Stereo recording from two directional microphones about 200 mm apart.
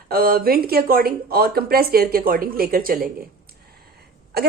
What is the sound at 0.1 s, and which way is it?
Speech, 50° right (ahead or behind).